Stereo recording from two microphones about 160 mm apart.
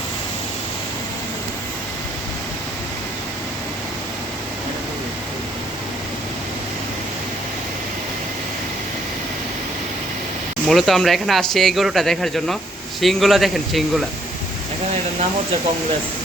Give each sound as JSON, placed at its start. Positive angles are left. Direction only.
{"t": 10.7, "sound": "speech", "side_deg": 0}